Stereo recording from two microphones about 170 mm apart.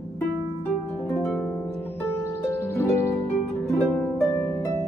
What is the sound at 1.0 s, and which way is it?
Harp, 5° left (ahead or behind).